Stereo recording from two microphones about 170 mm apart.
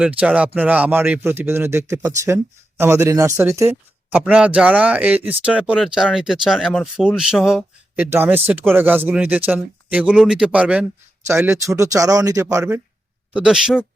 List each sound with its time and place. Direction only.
0.2 s a man's voice: 10° right (ahead or behind)
13.3 s speech: 5° right (ahead or behind)